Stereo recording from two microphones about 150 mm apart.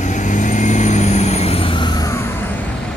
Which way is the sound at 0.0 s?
55° left (ahead or behind).